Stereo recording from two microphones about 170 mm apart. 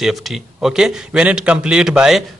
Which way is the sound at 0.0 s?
Centre (ahead or behind).